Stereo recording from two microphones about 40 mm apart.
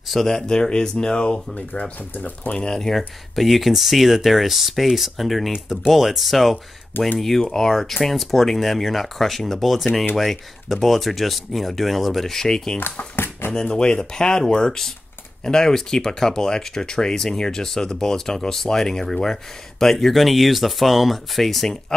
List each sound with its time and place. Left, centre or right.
0.3 s speech: centre
1.7 s speech: left
2.7 s speech: centre
3.0 s speech: centre
12.8 s a sound: left
13.7 s speech: left; by 21.7 s centre